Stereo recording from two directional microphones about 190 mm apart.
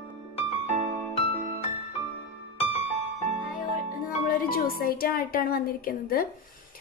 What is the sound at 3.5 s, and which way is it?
A woman's voice, 50° left (ahead or behind).